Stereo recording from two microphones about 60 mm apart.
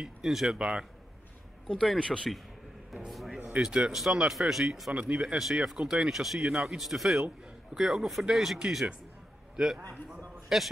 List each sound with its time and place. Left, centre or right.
0.0 s speech: centre
1.7 s speech: centre
2.0 s a man's voice: centre
3.1 s speech: centre
3.6 s speech: centre
3.9 s speech: centre
5.1 s speech: centre
10.0 s a sound: centre